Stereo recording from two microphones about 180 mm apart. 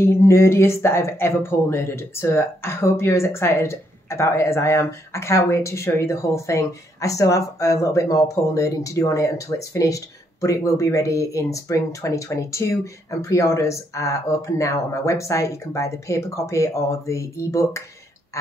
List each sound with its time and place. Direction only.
0.0 s speech: 15° left (ahead or behind)